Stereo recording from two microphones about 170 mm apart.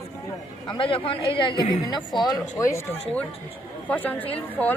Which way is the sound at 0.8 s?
30° left (ahead or behind).